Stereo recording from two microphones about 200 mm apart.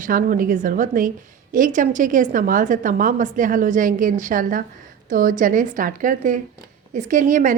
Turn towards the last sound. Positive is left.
turn(degrees=-40)  # may be behind; listen again after turning